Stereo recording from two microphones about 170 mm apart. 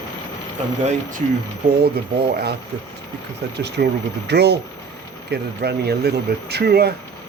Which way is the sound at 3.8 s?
70° right (ahead or behind).